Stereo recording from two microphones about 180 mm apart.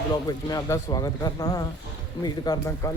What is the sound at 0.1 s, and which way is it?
Speech, 20° left (ahead or behind).